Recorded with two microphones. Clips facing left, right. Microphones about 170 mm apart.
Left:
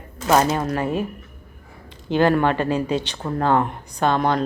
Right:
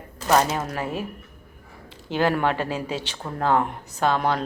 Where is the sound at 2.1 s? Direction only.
10° right (ahead or behind).